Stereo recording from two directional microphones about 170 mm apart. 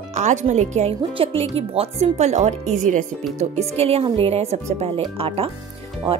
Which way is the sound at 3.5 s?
40° right (ahead or behind).